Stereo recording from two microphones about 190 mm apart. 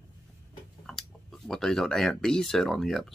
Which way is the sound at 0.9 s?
Centre (ahead or behind).